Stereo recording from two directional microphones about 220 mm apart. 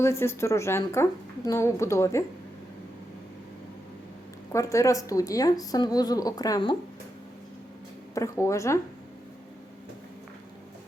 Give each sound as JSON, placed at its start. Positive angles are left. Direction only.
{"t": 0.0, "sound": "a woman's voice", "side_deg": 10}
{"t": 4.5, "sound": "a woman's voice", "side_deg": 15}
{"t": 8.1, "sound": "a woman's voice", "side_deg": 15}